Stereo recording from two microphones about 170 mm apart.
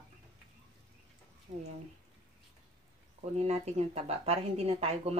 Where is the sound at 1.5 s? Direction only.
45° right (ahead or behind).